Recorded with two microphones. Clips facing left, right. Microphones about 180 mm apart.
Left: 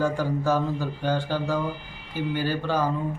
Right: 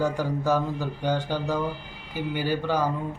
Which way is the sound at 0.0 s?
15° right (ahead or behind).